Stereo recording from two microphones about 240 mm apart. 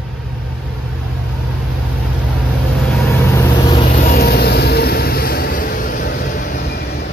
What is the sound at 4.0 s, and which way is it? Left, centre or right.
Vehicle, left.